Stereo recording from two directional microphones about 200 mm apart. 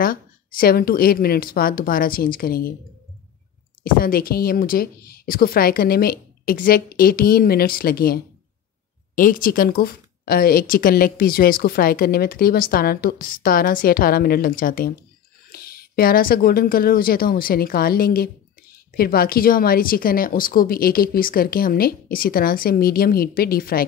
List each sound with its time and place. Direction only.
0.0 s a woman's voice: 45° left (ahead or behind)
3.8 s speech: 45° left (ahead or behind)